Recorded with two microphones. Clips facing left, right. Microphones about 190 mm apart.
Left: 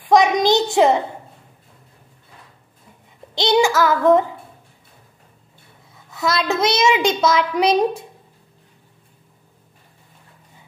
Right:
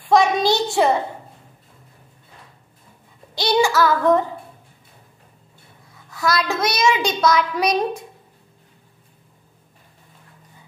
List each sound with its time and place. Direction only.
0.0 s a child's voice: 15° left (ahead or behind)
3.3 s a child's voice: 20° left (ahead or behind)
6.1 s a child's voice: 20° left (ahead or behind)